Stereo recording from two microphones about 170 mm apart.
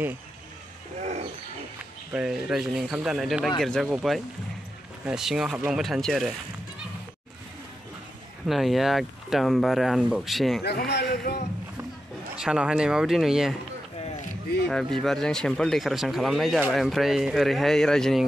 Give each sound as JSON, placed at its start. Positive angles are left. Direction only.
{"t": 2.1, "sound": "speech", "side_deg": 0}
{"t": 8.5, "sound": "speech", "side_deg": 0}
{"t": 10.6, "sound": "a man's voice", "side_deg": 75}
{"t": 12.4, "sound": "speech", "side_deg": -5}
{"t": 14.7, "sound": "speech", "side_deg": 0}